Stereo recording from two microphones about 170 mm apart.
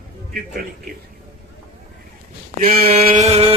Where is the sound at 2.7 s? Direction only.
35° right (ahead or behind).